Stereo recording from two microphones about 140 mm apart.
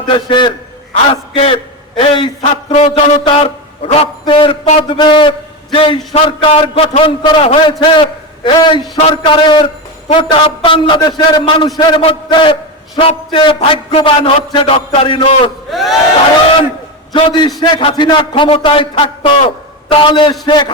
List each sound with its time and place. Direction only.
0.0 s a man's voice: 35° left (ahead or behind)
15.7 s speech: centre (ahead or behind)
17.1 s a man's voice: 35° left (ahead or behind)